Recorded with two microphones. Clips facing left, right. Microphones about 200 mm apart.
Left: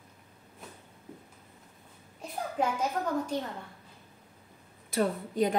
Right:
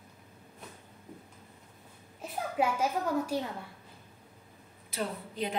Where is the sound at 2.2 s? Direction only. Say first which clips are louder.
Right 1 dB; 10° right (ahead or behind).